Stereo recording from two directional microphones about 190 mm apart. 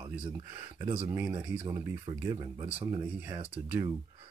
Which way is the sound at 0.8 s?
35° right (ahead or behind).